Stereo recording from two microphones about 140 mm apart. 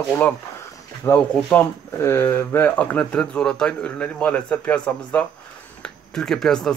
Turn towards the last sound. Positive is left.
turn(degrees=5)  # may be behind; listen again after turning